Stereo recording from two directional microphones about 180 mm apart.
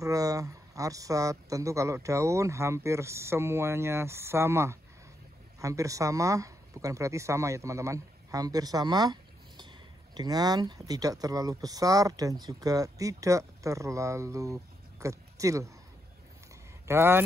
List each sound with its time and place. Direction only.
0.0 s a sound: 20° right (ahead or behind)
2.0 s speech: 15° right (ahead or behind)
16.8 s speech: 15° right (ahead or behind)